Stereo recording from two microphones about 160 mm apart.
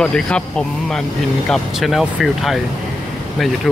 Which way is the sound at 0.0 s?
5° left (ahead or behind).